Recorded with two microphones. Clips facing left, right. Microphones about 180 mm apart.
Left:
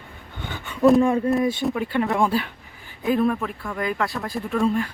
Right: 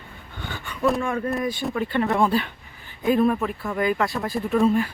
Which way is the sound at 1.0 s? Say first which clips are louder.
Left 5 dB; 30° left (ahead or behind).